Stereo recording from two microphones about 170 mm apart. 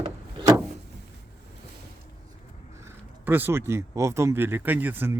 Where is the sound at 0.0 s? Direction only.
30° right (ahead or behind).